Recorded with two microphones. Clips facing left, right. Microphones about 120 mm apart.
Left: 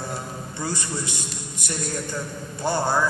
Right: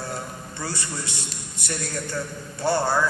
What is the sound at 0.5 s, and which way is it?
Speech, 15° left (ahead or behind).